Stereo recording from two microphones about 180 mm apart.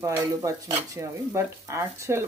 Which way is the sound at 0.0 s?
15° right (ahead or behind).